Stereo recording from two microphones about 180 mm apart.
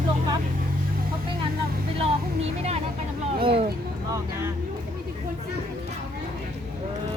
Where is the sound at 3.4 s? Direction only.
30° right (ahead or behind).